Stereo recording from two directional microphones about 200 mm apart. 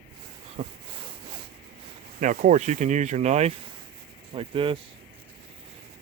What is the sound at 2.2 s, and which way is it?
Speech, 40° right (ahead or behind).